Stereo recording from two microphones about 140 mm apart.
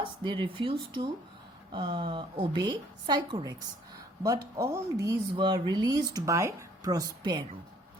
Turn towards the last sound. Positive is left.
turn(degrees=-30)  # may be behind; listen again after turning